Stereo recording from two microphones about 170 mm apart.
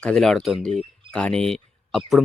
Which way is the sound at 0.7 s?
35° right (ahead or behind).